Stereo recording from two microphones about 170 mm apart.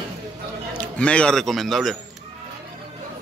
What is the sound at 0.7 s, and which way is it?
A man's voice, 5° left (ahead or behind).